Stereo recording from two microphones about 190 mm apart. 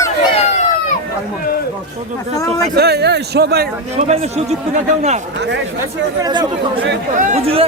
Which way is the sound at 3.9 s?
35° right (ahead or behind).